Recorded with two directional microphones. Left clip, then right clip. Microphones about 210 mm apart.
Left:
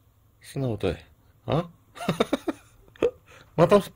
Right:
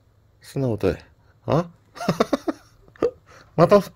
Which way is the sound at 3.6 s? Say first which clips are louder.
Right 4 dB; centre (ahead or behind).